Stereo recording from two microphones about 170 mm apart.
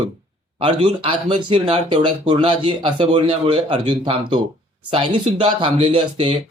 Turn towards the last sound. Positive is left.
turn(degrees=-30)  # may be behind; listen again after turning